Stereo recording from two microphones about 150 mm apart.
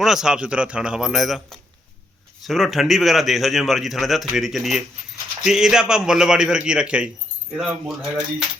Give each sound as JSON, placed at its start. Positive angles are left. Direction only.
{"t": 0.0, "sound": "a man's voice", "side_deg": -5}